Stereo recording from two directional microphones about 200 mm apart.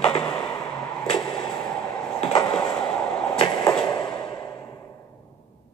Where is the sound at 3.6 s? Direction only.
10° left (ahead or behind).